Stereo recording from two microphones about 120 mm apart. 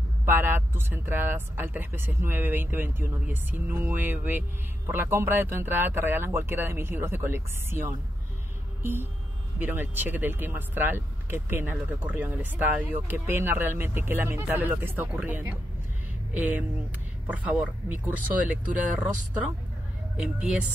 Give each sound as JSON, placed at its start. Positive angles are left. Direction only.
{"t": 0.2, "sound": "speech", "side_deg": -20}
{"t": 9.6, "sound": "speech", "side_deg": -15}